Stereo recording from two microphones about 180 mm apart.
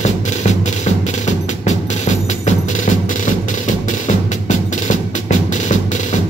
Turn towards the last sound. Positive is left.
turn(degrees=40)  # may be behind; listen again after turning